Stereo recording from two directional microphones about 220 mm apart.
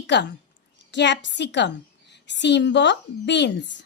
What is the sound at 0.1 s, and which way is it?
A woman's voice, 50° left (ahead or behind).